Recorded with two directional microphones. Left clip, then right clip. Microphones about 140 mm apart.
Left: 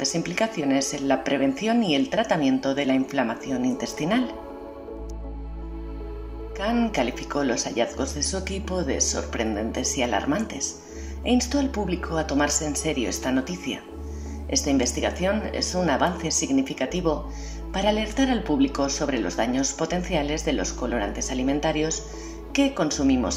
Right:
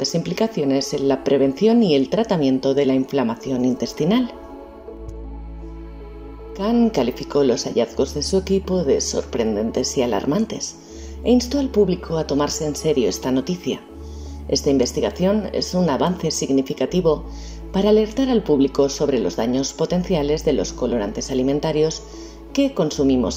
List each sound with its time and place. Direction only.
0.0 s speech: 35° right (ahead or behind)
6.5 s speech: 35° right (ahead or behind)